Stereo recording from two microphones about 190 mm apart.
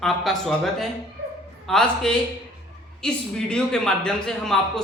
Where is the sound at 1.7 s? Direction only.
5° left (ahead or behind).